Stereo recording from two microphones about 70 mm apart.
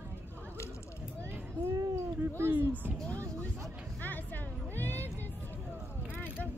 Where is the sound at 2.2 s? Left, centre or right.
Right.